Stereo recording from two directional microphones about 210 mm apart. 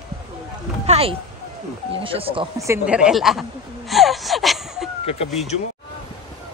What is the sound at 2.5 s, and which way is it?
Speech, 15° right (ahead or behind).